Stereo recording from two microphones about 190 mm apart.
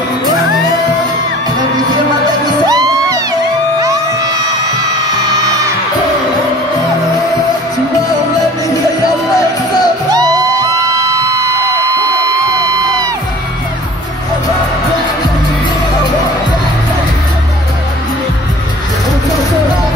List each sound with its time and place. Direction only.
2.7 s music: 20° right (ahead or behind)
10.1 s music: 20° right (ahead or behind)